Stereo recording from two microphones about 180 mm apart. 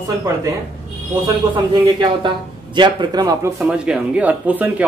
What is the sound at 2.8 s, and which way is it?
Speech, 25° right (ahead or behind).